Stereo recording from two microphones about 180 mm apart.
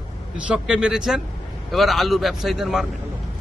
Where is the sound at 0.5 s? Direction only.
5° right (ahead or behind).